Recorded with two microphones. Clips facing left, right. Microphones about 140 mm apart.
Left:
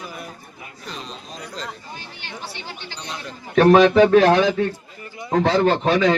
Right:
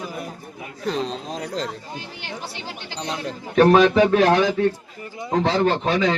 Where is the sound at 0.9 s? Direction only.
90° right.